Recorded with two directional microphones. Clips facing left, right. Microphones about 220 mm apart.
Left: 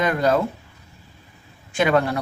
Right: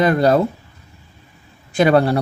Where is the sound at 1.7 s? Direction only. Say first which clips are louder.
Right 5 dB; 35° right (ahead or behind).